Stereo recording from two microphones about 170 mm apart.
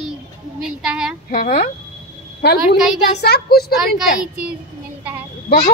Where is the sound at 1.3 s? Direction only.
60° left (ahead or behind).